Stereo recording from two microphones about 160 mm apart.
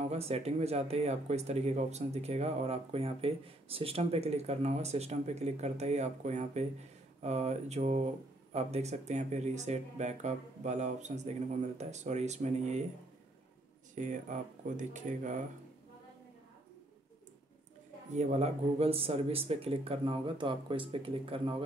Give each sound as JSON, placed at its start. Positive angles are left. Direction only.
{"t": 0.0, "sound": "speech", "side_deg": -40}
{"t": 13.9, "sound": "speech", "side_deg": -50}
{"t": 18.1, "sound": "speech", "side_deg": -45}